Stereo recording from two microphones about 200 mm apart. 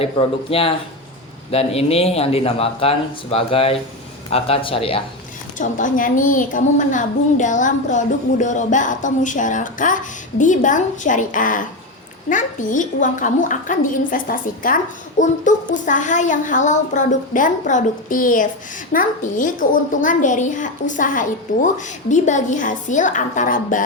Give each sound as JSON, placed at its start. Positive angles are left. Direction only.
{"t": 0.0, "sound": "a man's voice", "side_deg": 30}
{"t": 5.5, "sound": "a woman's voice", "side_deg": 40}